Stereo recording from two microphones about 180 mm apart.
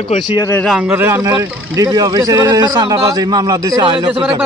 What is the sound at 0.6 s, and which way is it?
A man's voice, centre (ahead or behind).